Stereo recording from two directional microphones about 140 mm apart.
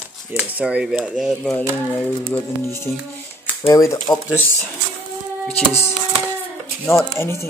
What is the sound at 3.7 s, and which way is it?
Speech, 25° left (ahead or behind).